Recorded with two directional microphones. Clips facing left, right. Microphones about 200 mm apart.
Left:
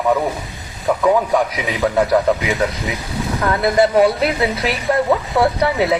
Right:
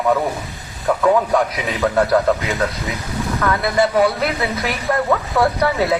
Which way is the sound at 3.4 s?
30° left (ahead or behind).